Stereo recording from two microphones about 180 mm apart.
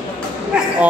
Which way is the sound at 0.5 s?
5° right (ahead or behind).